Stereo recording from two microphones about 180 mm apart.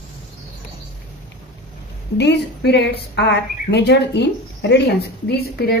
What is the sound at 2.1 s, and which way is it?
A woman's voice, 70° left (ahead or behind).